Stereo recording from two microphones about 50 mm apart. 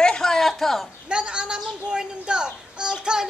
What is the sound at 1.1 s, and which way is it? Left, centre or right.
A child's voice, centre.